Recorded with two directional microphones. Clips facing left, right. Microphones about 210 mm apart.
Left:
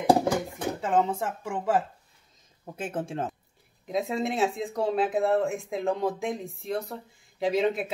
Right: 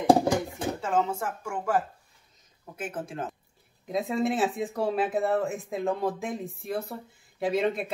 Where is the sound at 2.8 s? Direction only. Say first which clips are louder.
Left 3 dB; 25° left (ahead or behind).